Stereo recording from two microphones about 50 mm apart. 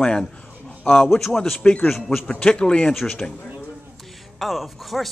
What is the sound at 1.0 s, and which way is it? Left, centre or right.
Speech, centre.